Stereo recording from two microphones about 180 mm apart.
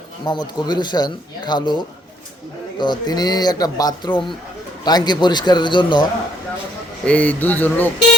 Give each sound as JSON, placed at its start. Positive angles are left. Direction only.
{"t": 0.3, "sound": "speech", "side_deg": 25}
{"t": 7.0, "sound": "speech", "side_deg": 10}